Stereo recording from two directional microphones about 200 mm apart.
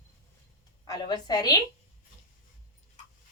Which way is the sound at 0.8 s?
20° left (ahead or behind).